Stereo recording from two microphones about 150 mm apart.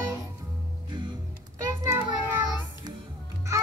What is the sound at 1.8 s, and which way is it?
Child singing, 15° right (ahead or behind).